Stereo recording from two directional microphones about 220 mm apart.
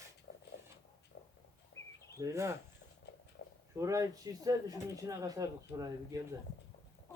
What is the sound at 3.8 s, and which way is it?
Speech, 15° right (ahead or behind).